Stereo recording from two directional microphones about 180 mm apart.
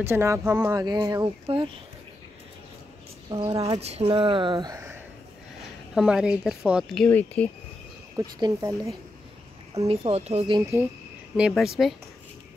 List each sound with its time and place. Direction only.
0.0 s speech: 15° right (ahead or behind); by 1.8 s 30° right (ahead or behind)
3.3 s speech: 20° right (ahead or behind)
3.8 s speech: 35° right (ahead or behind); by 4.9 s 20° right (ahead or behind)
5.9 s speech: 5° right (ahead or behind)
8.2 s speech: 20° right (ahead or behind)
9.8 s speech: 35° right (ahead or behind)
11.3 s speech: 5° right (ahead or behind)